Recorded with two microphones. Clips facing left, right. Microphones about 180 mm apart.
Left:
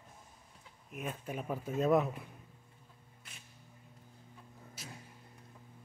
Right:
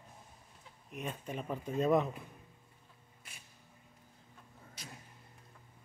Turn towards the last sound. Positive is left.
turn(degrees=5)  # may be behind; listen again after turning